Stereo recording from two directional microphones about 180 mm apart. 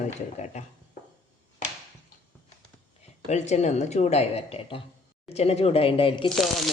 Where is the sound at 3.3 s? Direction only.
40° left (ahead or behind).